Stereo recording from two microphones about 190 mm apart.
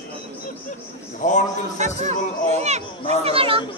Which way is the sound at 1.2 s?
40° left (ahead or behind).